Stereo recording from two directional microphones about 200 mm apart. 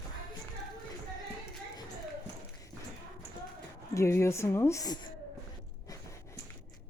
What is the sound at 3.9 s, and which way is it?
Speech, 15° left (ahead or behind).